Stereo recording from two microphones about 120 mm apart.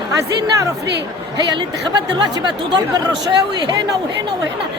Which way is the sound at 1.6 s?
40° right (ahead or behind).